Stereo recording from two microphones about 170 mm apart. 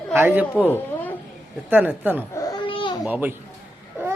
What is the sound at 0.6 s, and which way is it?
Speech, 10° left (ahead or behind).